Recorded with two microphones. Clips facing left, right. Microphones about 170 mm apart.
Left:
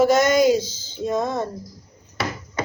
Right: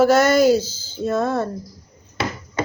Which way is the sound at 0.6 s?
10° right (ahead or behind).